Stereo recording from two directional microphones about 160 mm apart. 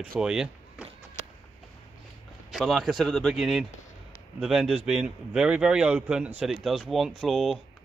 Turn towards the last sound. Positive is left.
turn(degrees=0)  # may be behind; listen again after turning